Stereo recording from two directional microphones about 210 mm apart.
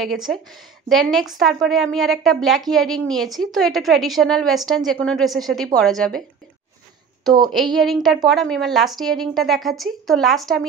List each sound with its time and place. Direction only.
0.0 s a woman's voice: centre (ahead or behind)
7.2 s a sound: 20° right (ahead or behind)
7.7 s a woman's voice: centre (ahead or behind)